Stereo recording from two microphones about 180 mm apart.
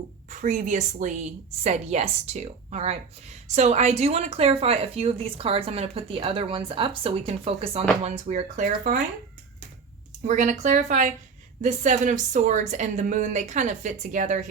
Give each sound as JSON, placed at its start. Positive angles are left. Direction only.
{"t": 0.3, "sound": "speech", "side_deg": -45}
{"t": 10.2, "sound": "a woman's voice", "side_deg": -40}